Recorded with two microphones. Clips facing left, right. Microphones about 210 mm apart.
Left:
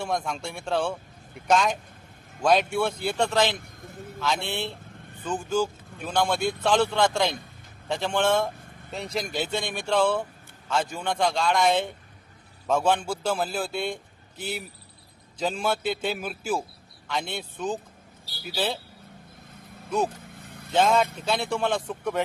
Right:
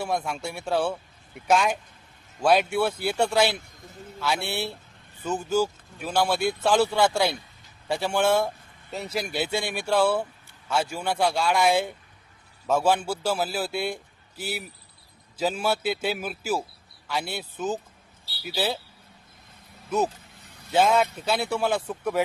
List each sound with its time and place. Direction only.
0.0 s speech: 5° right (ahead or behind)
3.6 s a man's voice: 55° left (ahead or behind)
4.2 s speech: 10° right (ahead or behind)
20.3 s vehicle: 55° left (ahead or behind)
20.7 s speech: 10° right (ahead or behind)